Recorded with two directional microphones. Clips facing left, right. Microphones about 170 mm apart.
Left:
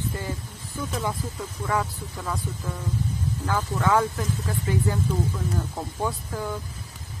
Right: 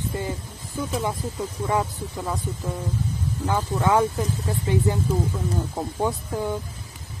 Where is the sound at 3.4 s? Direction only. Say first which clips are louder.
Right 2 dB; 20° right (ahead or behind).